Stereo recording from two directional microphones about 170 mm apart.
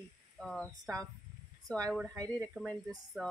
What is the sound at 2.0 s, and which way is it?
Speech, 20° right (ahead or behind).